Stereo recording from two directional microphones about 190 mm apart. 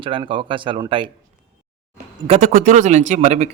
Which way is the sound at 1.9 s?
40° right (ahead or behind).